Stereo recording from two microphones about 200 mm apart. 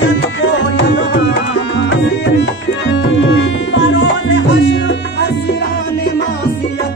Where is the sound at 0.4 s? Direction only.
65° left (ahead or behind).